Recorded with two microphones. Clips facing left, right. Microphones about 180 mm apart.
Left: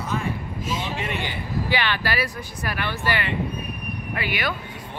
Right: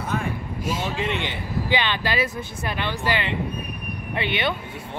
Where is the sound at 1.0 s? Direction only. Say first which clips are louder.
Right 2 dB; 20° right (ahead or behind).